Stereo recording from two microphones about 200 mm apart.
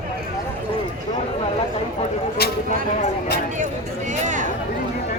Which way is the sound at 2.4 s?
50° left (ahead or behind).